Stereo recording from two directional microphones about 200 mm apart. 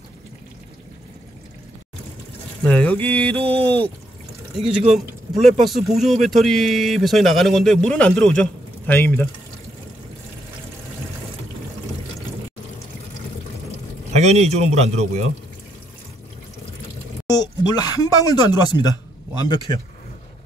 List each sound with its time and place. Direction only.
2.6 s a man's voice: 5° left (ahead or behind)
4.9 s a man's voice: centre (ahead or behind)
14.1 s a man's voice: 35° right (ahead or behind)
17.3 s speech: 20° left (ahead or behind)